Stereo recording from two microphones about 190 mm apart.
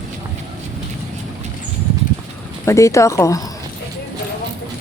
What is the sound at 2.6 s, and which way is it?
Speech, 15° left (ahead or behind).